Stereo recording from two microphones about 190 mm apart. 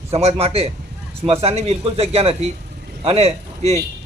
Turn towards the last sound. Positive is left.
turn(degrees=-35)  # may be behind; listen again after turning